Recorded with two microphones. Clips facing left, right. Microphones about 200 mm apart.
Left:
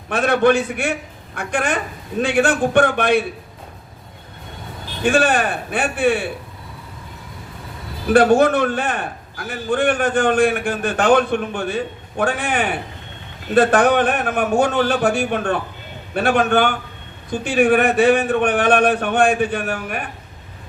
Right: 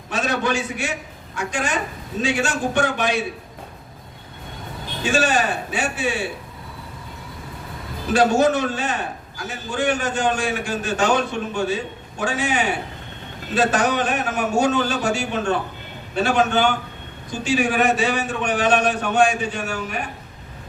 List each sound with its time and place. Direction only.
0.1 s a man's voice: 55° left (ahead or behind)
5.0 s a man's voice: 55° left (ahead or behind)
8.1 s a man's voice: 55° left (ahead or behind)